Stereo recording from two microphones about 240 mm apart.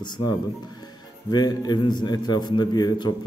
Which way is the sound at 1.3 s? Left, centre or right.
Centre.